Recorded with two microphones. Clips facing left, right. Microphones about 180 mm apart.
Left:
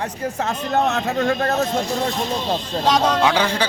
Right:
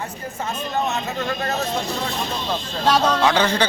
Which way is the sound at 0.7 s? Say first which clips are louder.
Left 5 dB; 65° left (ahead or behind).